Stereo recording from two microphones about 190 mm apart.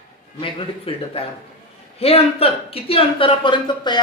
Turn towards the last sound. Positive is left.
turn(degrees=25)  # may be behind; listen again after turning